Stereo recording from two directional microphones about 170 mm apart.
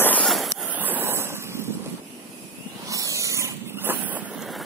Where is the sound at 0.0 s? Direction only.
5° left (ahead or behind).